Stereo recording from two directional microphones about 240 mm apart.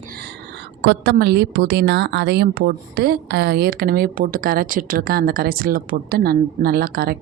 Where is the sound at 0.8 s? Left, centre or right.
Right.